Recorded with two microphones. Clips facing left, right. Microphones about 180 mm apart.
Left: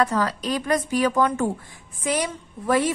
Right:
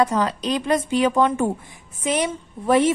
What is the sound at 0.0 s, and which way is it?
A woman's voice, 20° right (ahead or behind).